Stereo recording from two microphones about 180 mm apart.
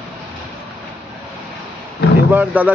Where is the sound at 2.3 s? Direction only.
10° right (ahead or behind).